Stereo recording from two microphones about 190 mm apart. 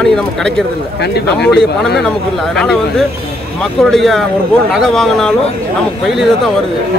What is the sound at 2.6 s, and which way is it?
A man's voice, centre (ahead or behind).